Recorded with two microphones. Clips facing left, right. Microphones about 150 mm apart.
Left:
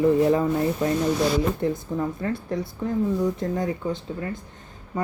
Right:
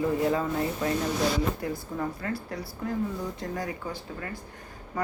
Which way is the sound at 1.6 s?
25° left (ahead or behind).